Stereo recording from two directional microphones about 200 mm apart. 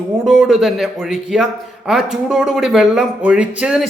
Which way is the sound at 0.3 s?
Centre (ahead or behind).